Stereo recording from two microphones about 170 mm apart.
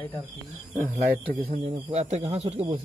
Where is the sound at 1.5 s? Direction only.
35° right (ahead or behind).